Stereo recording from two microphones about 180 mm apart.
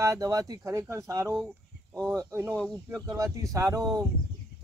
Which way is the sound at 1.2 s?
Centre (ahead or behind).